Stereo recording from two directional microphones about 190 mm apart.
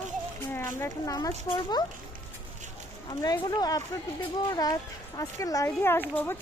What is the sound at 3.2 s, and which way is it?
Speech, 20° left (ahead or behind).